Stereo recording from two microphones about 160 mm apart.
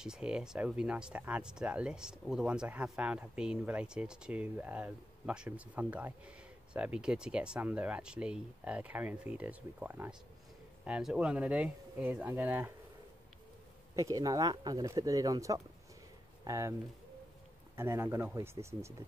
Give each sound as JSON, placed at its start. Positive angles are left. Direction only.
{"t": 0.0, "sound": "speech", "side_deg": -5}
{"t": 13.9, "sound": "speech", "side_deg": -20}
{"t": 17.7, "sound": "speech", "side_deg": -15}